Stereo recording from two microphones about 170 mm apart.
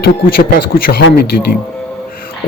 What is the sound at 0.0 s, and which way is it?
A man's voice, 60° left (ahead or behind).